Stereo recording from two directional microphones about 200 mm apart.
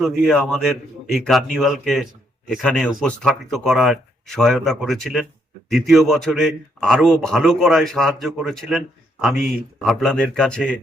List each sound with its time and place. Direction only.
0.0 s a man's voice: centre (ahead or behind)